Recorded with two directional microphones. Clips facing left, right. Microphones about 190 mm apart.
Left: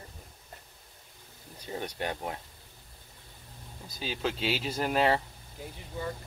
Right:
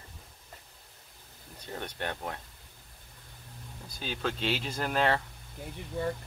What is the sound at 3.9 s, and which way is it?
Speech, 5° left (ahead or behind).